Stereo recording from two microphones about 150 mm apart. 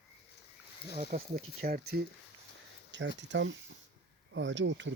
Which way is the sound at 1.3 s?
90° right.